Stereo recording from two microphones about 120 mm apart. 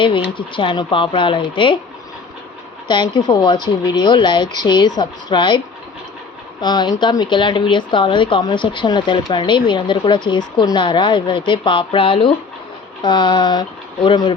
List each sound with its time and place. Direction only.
0.3 s speech: 45° left (ahead or behind)
2.8 s speech: 40° left (ahead or behind)
13.0 s speech: 35° left (ahead or behind)